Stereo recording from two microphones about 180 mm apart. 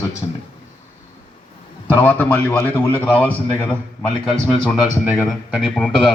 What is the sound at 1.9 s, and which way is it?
A man's voice, 10° left (ahead or behind).